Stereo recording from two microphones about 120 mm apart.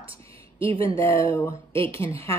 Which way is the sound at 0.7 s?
25° left (ahead or behind).